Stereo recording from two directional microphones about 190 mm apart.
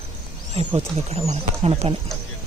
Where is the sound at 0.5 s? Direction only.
35° right (ahead or behind).